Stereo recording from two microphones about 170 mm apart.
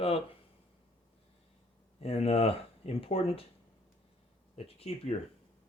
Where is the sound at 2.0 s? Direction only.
35° left (ahead or behind).